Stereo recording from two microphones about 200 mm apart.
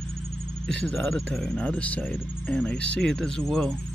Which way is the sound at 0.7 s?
5° left (ahead or behind).